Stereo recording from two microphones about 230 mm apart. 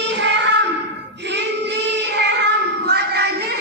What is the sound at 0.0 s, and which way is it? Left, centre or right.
Child singing, right.